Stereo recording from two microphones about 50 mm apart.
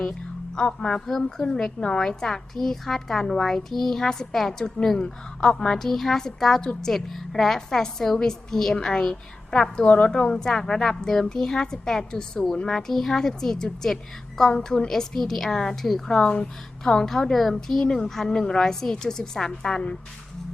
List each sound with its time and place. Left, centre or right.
0.0 s a woman's voice: centre
9.8 s a woman's voice: left
10.1 s a woman's voice: centre